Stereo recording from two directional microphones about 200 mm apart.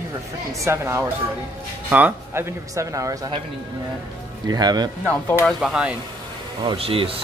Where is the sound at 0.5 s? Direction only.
15° right (ahead or behind).